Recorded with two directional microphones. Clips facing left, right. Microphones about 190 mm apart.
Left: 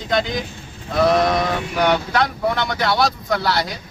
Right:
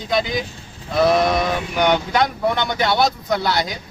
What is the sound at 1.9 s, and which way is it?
Speech, 15° right (ahead or behind).